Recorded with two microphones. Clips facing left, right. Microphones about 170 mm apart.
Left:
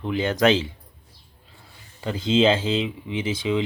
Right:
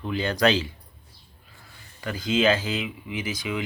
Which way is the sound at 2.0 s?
25° left (ahead or behind).